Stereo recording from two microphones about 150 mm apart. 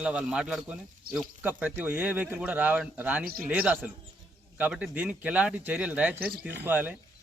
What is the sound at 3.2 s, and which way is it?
Speech, 90° right.